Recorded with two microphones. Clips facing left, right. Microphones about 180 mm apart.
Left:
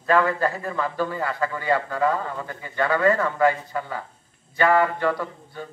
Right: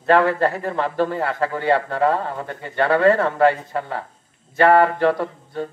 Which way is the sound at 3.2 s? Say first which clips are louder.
Right 4 dB; 65° right (ahead or behind).